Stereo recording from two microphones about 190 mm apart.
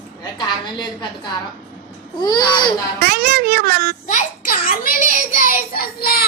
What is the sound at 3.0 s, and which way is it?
Speech, 55° right (ahead or behind).